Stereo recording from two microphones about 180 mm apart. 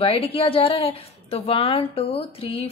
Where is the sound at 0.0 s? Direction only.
30° left (ahead or behind).